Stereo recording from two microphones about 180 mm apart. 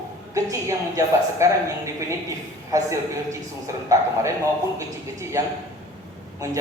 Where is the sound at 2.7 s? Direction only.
15° right (ahead or behind).